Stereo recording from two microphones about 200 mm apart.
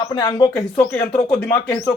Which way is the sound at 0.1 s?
20° left (ahead or behind).